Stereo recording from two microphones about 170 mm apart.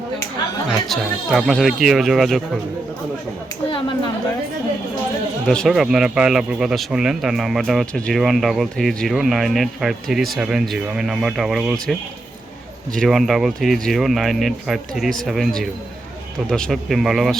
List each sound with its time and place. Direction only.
0.9 s speech: centre (ahead or behind)
5.5 s speech: centre (ahead or behind)